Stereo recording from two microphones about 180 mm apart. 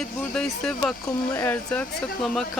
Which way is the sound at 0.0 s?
5° left (ahead or behind).